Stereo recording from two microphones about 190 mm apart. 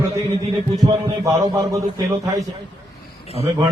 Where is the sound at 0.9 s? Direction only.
20° right (ahead or behind).